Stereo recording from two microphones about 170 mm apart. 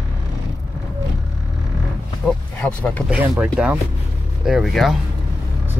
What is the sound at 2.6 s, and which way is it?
Speech, 10° left (ahead or behind).